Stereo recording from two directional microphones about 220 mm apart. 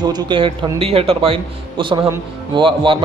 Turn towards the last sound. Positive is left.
turn(degrees=-20)  # may be behind; listen again after turning